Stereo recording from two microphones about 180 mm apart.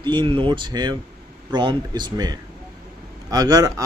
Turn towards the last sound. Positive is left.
turn(degrees=-20)  # may be behind; listen again after turning